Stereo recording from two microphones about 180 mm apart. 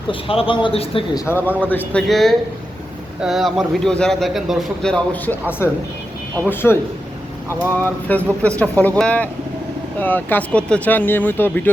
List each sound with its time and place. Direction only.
0.1 s speech: 30° left (ahead or behind)
1.1 s speech: 20° left (ahead or behind)
1.7 s a man's voice: 5° left (ahead or behind)
7.8 s speech: 10° left (ahead or behind)